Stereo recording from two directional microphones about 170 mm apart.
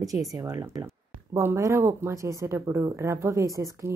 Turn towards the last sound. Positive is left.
turn(degrees=-20)  # may be behind; listen again after turning